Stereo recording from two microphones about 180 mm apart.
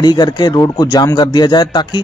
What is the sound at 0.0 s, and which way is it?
A man's voice, 25° left (ahead or behind).